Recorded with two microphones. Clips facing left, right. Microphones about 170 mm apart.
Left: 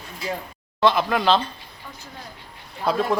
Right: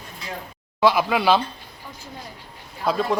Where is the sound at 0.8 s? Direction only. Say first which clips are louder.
Right 1 dB; 10° right (ahead or behind).